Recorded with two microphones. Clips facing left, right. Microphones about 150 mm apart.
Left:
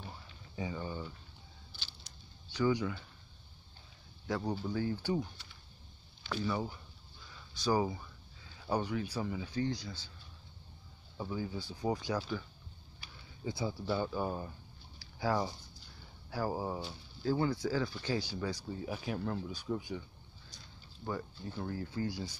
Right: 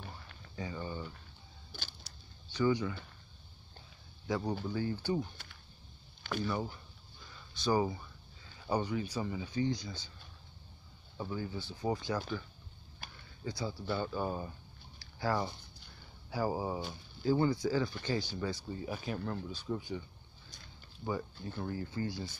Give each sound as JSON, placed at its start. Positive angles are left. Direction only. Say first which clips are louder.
{"t": 0.6, "sound": "speech", "louder": "left 1 dB", "side_deg": 10}
{"t": 2.5, "sound": "speech", "louder": "right 1 dB", "side_deg": 10}
{"t": 4.3, "sound": "speech", "louder": "right 1 dB", "side_deg": 0}
{"t": 6.4, "sound": "speech", "louder": "left 2 dB", "side_deg": 5}
{"t": 11.1, "sound": "speech", "louder": "even", "side_deg": 5}
{"t": 13.0, "sound": "a sound", "louder": "right 5 dB", "side_deg": -45}
{"t": 13.5, "sound": "speech", "louder": "left 2 dB", "side_deg": 25}
{"t": 13.8, "sound": "speech", "louder": "even", "side_deg": 10}
{"t": 15.0, "sound": "a sound", "louder": "left 1 dB", "side_deg": 5}
{"t": 16.3, "sound": "speech", "louder": "right 2 dB", "side_deg": 0}
{"t": 21.0, "sound": "speech", "louder": "right 2 dB", "side_deg": -5}